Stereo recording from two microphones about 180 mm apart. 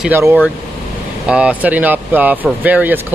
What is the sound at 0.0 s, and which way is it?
Speech, 10° right (ahead or behind).